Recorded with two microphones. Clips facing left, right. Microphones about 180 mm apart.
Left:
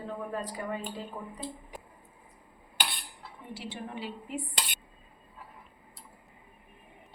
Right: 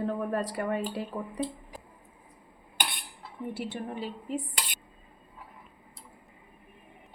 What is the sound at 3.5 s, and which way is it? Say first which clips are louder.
Speech: right 2 dB; 50° right (ahead or behind).